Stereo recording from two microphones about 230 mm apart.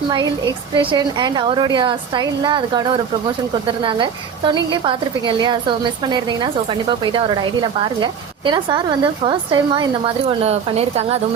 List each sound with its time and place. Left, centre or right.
0.8 s a woman's voice: right